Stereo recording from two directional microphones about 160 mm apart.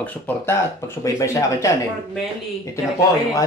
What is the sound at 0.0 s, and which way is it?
Speech, 15° left (ahead or behind).